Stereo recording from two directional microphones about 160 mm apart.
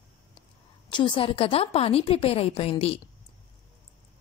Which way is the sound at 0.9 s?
30° left (ahead or behind).